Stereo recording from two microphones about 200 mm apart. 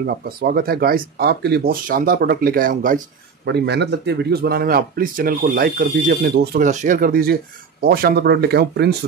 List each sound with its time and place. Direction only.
0.0 s speech: 45° right (ahead or behind)
3.4 s speech: 60° right (ahead or behind)